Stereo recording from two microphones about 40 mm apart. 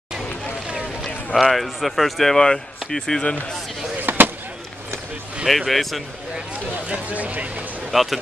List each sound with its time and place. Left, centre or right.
1.0 s speech: centre
2.3 s speech: centre
4.0 s a sound: right
5.5 s speech: centre
6.9 s speech: right
7.9 s speech: centre